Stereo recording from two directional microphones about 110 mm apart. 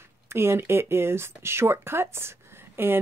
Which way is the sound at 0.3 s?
20° right (ahead or behind).